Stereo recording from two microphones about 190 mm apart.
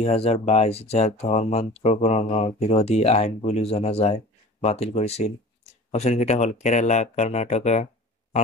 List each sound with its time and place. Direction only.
0.0 s speech: 35° left (ahead or behind)